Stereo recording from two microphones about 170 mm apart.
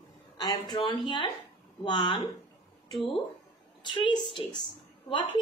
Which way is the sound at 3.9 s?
30° left (ahead or behind).